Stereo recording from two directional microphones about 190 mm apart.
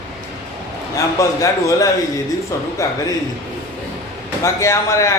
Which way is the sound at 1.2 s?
15° left (ahead or behind).